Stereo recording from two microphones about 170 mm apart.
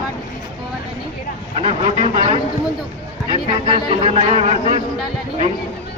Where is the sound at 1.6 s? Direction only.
35° right (ahead or behind).